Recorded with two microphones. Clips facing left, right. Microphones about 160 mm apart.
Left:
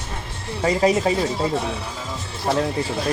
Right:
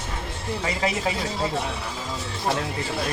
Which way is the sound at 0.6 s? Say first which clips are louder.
Left 9 dB; 35° left (ahead or behind).